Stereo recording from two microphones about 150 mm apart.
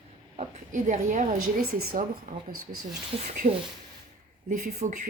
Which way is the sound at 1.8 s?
70° right (ahead or behind).